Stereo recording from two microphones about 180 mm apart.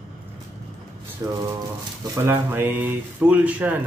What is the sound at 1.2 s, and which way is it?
Speech, 15° right (ahead or behind).